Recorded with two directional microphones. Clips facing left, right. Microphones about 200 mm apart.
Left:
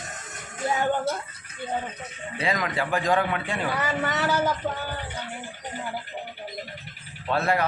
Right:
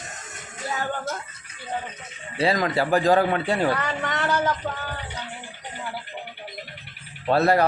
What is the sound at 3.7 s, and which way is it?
Speech, 5° left (ahead or behind).